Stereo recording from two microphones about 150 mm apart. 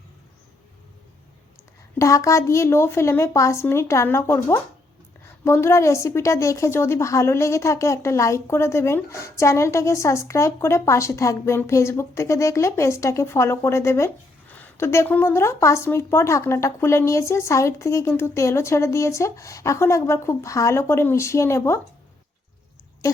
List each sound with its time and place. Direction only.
2.0 s a woman's voice: 20° left (ahead or behind)